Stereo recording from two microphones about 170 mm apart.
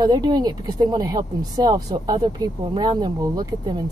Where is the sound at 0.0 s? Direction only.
25° right (ahead or behind).